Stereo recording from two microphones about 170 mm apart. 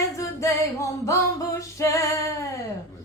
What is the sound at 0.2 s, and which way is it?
Music, 15° left (ahead or behind).